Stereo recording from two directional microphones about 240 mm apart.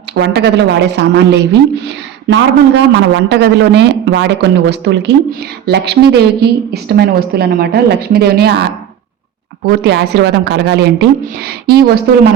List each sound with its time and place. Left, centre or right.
0.1 s a woman's voice: right
9.6 s a woman's voice: right